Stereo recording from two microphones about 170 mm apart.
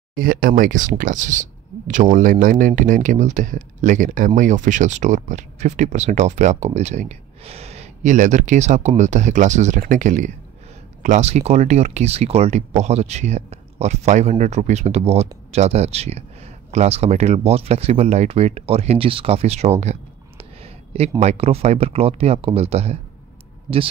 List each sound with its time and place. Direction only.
0.1 s speech: 60° right (ahead or behind); by 19.7 s 40° right (ahead or behind)
19.8 s a sound: 40° right (ahead or behind)
21.2 s speech: 40° right (ahead or behind)